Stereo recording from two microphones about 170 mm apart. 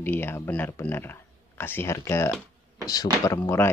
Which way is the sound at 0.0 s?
10° left (ahead or behind).